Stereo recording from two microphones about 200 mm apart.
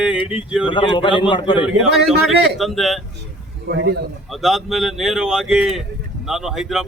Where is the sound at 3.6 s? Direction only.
60° right (ahead or behind).